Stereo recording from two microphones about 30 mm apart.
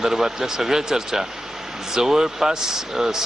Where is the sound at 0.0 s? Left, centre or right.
Centre.